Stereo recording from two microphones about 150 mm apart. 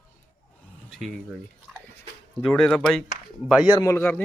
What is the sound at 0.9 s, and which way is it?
Speech, centre (ahead or behind).